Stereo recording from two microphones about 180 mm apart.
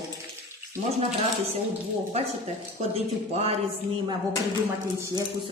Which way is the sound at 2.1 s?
35° right (ahead or behind).